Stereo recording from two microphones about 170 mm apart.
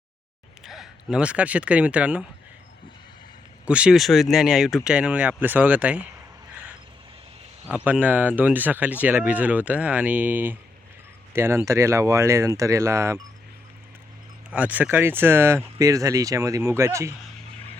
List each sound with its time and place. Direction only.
0.6 s speech: centre (ahead or behind)
3.7 s speech: 5° right (ahead or behind)
7.7 s speech: 10° right (ahead or behind)
14.5 s speech: 10° right (ahead or behind)